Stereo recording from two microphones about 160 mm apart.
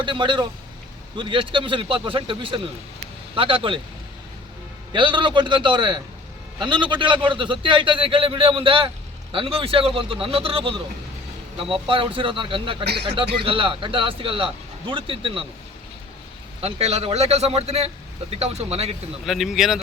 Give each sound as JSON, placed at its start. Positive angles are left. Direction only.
{"t": 0.0, "sound": "a man's voice", "side_deg": -30}
{"t": 4.9, "sound": "a man's voice", "side_deg": -30}
{"t": 12.8, "sound": "speech", "side_deg": -90}
{"t": 13.1, "sound": "speech", "side_deg": -35}
{"t": 16.6, "sound": "speech", "side_deg": -40}
{"t": 19.2, "sound": "speech", "side_deg": 0}